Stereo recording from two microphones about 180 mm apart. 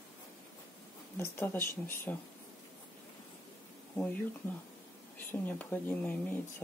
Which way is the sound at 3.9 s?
5° left (ahead or behind).